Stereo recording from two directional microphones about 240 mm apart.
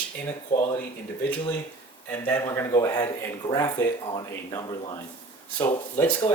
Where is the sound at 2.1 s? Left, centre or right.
Centre.